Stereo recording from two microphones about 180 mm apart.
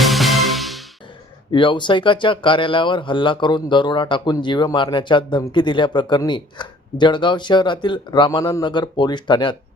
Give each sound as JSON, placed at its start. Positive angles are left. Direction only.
{"t": 0.0, "sound": "music", "side_deg": 0}
{"t": 1.5, "sound": "speech", "side_deg": 25}